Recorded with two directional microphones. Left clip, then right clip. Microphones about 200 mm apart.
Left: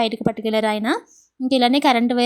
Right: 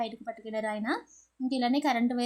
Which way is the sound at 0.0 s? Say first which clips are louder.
Left 14 dB; 35° left (ahead or behind).